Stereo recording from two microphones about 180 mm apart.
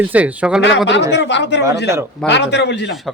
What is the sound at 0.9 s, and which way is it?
Speech, 75° left (ahead or behind).